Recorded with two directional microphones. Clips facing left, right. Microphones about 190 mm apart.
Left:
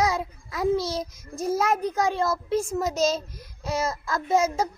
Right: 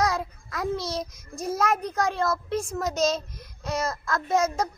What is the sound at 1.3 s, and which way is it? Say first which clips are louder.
Speech: left 4 dB; 25° left (ahead or behind).